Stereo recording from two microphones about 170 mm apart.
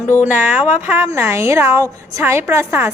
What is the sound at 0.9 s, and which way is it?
A woman's voice, 15° right (ahead or behind).